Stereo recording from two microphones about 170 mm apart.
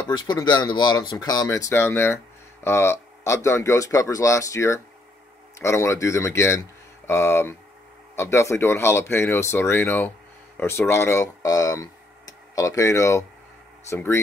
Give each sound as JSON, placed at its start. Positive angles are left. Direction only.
{"t": 0.1, "sound": "speech", "side_deg": 25}